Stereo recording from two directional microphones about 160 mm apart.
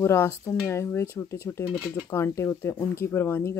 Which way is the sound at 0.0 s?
15° left (ahead or behind).